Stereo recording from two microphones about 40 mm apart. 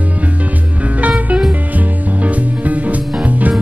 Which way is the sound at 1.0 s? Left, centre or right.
Right.